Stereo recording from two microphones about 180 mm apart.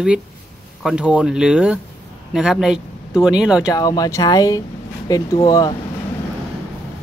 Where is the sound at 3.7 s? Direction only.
20° left (ahead or behind).